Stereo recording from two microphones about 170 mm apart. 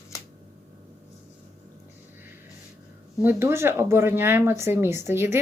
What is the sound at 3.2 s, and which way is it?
A woman's voice, 15° right (ahead or behind).